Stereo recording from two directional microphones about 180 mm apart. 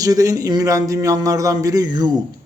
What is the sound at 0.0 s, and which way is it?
A woman's voice, 20° right (ahead or behind).